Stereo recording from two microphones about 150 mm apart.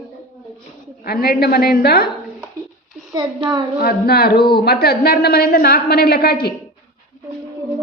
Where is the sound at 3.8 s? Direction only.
90° left.